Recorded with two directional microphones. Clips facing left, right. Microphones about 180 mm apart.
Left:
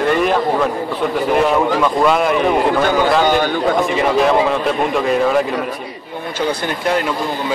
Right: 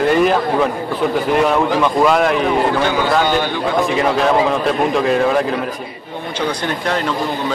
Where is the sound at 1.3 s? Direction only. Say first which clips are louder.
Left 1 dB; centre (ahead or behind).